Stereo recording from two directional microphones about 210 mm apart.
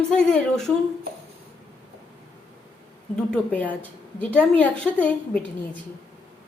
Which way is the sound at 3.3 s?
5° left (ahead or behind).